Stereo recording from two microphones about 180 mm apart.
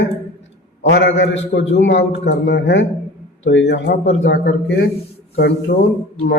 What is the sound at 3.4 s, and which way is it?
Speech, 85° left.